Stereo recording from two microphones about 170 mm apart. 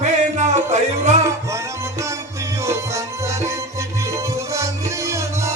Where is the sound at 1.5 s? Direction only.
15° right (ahead or behind).